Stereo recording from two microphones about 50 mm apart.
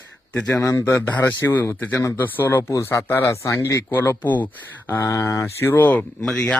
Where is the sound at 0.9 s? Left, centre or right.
Left.